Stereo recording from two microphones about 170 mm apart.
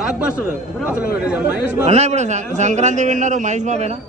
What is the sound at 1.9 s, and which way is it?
A man's voice, 40° right (ahead or behind).